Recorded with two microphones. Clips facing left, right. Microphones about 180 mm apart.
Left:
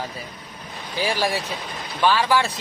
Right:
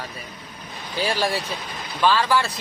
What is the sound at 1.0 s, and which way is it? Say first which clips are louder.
Speech: even; 15° left (ahead or behind).